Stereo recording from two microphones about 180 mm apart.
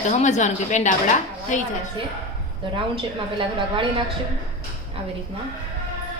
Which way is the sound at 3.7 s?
30° right (ahead or behind).